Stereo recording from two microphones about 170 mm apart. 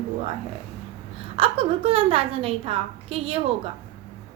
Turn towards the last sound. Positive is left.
turn(degrees=-35)  # may be behind; listen again after turning